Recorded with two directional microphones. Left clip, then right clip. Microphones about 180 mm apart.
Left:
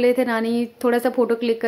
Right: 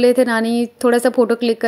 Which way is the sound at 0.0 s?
25° right (ahead or behind).